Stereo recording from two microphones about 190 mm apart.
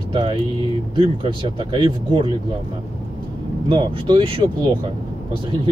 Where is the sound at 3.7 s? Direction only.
25° right (ahead or behind).